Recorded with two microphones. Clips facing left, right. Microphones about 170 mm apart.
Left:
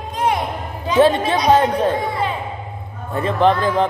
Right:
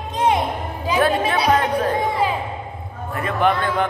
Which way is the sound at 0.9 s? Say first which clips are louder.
Left 4 dB; 25° left (ahead or behind).